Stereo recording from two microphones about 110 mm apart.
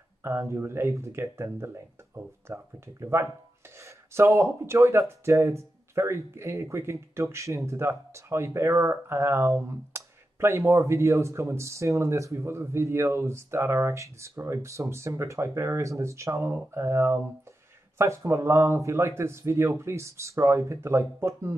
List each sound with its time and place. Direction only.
0.2 s speech: 25° right (ahead or behind)